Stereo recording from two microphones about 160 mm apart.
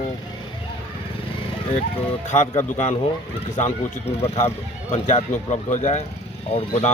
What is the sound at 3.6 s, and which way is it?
Speech, 40° left (ahead or behind).